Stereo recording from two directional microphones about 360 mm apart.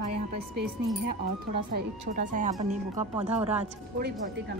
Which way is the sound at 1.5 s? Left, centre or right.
Right.